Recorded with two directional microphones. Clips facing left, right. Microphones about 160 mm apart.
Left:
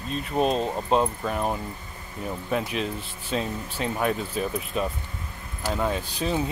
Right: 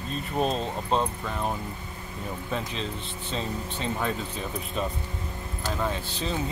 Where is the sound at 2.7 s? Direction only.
10° left (ahead or behind).